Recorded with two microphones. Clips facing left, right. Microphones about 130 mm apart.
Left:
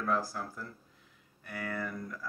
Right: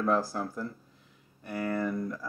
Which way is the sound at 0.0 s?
25° right (ahead or behind).